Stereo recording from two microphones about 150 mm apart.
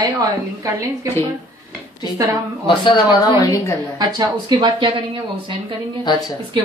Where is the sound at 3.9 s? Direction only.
25° right (ahead or behind).